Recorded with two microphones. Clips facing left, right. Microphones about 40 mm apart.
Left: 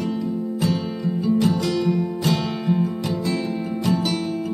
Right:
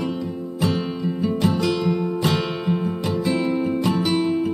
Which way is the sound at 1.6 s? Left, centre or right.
Centre.